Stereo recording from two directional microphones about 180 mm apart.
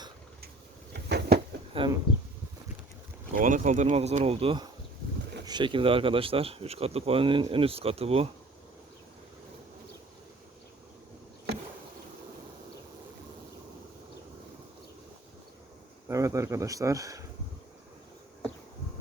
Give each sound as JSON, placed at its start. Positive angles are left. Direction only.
{"t": 0.9, "sound": "a sound", "side_deg": -65}
{"t": 1.7, "sound": "speech", "side_deg": -30}
{"t": 3.3, "sound": "speech", "side_deg": -45}
{"t": 16.0, "sound": "speech", "side_deg": -15}